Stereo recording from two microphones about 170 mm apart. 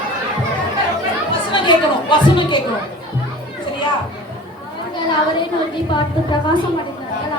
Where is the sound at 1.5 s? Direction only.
30° left (ahead or behind).